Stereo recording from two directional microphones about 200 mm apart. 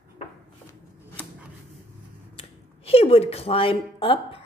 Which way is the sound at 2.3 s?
30° left (ahead or behind).